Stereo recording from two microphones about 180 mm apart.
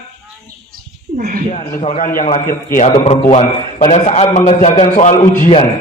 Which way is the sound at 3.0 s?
35° left (ahead or behind).